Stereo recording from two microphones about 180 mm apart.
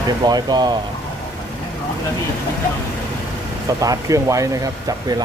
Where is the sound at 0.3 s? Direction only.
25° right (ahead or behind).